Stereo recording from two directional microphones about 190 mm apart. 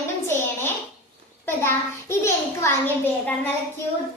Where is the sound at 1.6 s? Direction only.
15° left (ahead or behind).